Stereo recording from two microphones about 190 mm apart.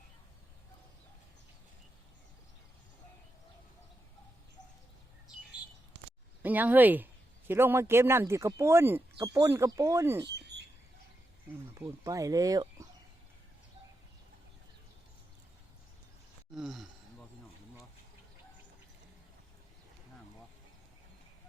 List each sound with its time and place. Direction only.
6.4 s speech: 10° right (ahead or behind)
10.5 s bird: 60° right (ahead or behind)
11.7 s speech: 15° right (ahead or behind)
16.6 s gasp: centre (ahead or behind)